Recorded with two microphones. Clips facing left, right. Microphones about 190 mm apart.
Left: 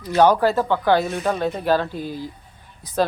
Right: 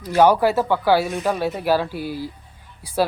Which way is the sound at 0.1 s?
10° right (ahead or behind).